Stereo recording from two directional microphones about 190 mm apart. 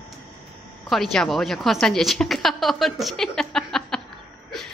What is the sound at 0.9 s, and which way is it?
A woman's voice, centre (ahead or behind).